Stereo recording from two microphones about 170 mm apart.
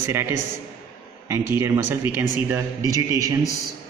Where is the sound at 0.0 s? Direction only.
15° right (ahead or behind).